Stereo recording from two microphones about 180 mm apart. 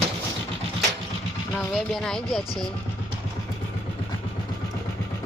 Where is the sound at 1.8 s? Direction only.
5° left (ahead or behind).